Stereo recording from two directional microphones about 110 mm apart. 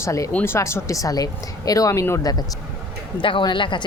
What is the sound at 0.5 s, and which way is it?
Speech, 25° left (ahead or behind).